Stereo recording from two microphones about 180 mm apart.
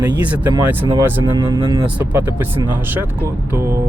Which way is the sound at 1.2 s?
25° right (ahead or behind).